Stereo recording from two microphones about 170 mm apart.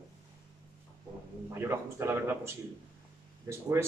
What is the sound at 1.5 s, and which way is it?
A man's voice, 15° right (ahead or behind).